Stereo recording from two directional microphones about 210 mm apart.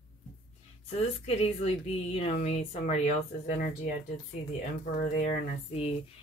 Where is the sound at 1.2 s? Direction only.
30° left (ahead or behind).